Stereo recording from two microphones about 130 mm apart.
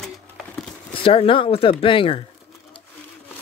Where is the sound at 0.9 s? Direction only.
45° left (ahead or behind).